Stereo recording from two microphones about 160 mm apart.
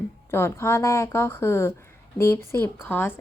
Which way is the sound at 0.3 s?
15° left (ahead or behind).